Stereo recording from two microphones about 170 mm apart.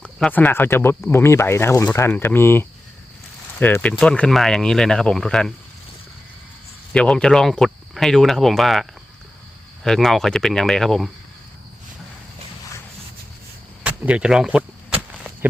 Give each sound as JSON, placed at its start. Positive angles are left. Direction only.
{"t": 0.0, "sound": "speech", "side_deg": 5}
{"t": 6.9, "sound": "speech", "side_deg": 5}
{"t": 13.8, "sound": "a sound", "side_deg": -5}